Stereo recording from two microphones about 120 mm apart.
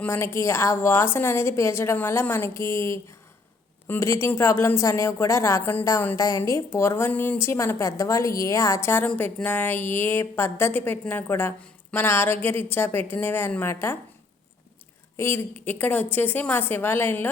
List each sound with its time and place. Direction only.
0.0 s a woman's voice: 20° left (ahead or behind)
15.1 s a woman's voice: 20° left (ahead or behind)